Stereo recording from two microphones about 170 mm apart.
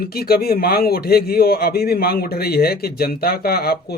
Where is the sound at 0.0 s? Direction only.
65° left (ahead or behind).